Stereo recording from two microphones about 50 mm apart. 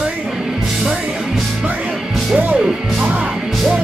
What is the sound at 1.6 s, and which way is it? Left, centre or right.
Music, right.